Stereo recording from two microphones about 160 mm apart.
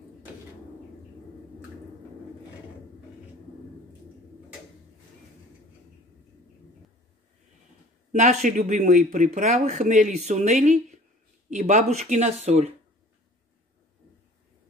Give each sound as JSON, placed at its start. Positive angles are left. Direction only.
{"t": 8.1, "sound": "speech", "side_deg": -50}